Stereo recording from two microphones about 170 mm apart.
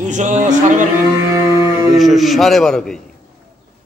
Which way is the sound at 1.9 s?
Centre (ahead or behind).